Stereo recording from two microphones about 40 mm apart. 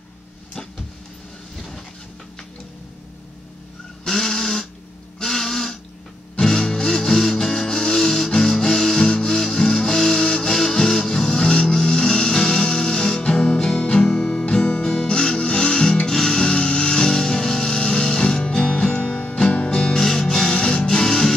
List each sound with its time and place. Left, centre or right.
4.0 s a sound: centre
6.4 s music: left
19.4 s music: left
20.0 s music: centre